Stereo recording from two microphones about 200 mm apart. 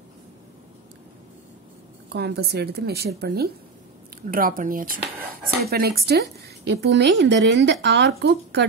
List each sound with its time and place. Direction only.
2.1 s a woman's voice: 55° right (ahead or behind)